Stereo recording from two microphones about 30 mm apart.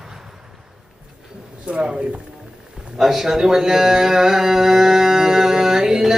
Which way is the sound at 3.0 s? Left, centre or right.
Centre.